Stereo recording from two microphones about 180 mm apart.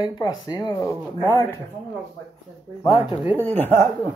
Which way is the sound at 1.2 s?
10° left (ahead or behind).